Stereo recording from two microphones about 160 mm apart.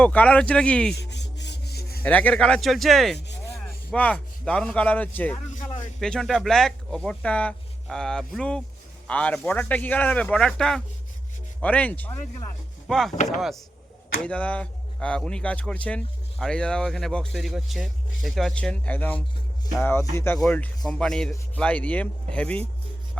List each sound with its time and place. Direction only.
0.0 s a man's voice: 10° left (ahead or behind)
1.1 s rub: 90° left
2.0 s a man's voice: 10° left (ahead or behind)
14.3 s a man's voice: 10° left (ahead or behind)